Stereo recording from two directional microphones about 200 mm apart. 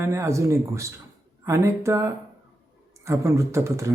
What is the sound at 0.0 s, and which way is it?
Speech, 15° right (ahead or behind).